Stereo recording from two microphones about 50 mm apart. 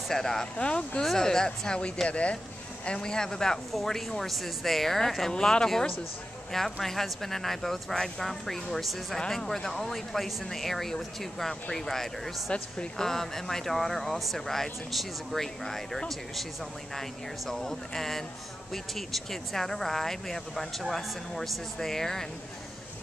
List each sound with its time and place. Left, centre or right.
0.1 s speech: centre
0.6 s speech: centre
17.5 s speech: centre